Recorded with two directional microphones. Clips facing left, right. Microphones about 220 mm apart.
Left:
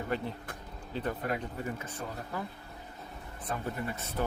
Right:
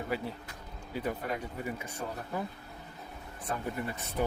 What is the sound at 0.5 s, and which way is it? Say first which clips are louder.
Speech: left 4 dB; 55° left (ahead or behind).